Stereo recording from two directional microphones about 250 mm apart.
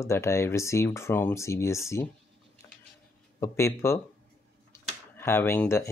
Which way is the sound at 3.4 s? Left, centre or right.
Centre.